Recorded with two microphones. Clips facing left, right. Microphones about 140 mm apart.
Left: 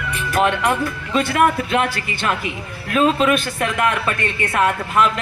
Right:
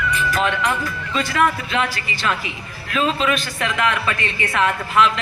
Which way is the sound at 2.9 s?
50° left (ahead or behind).